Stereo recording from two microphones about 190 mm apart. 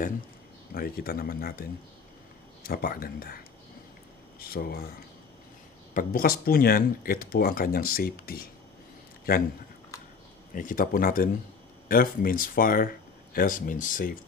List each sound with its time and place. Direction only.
0.7 s speech: 50° left (ahead or behind)
2.6 s speech: 50° left (ahead or behind)
4.4 s speech: 50° left (ahead or behind)
5.9 s speech: 50° left (ahead or behind)
10.5 s speech: 45° left (ahead or behind)